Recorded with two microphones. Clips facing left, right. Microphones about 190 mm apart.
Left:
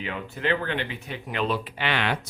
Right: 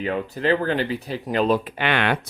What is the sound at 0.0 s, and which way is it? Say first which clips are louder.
Speech: right 7 dB; 40° right (ahead or behind).